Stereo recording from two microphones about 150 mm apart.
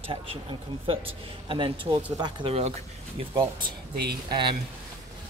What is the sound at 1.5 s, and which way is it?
Speech, 35° right (ahead or behind).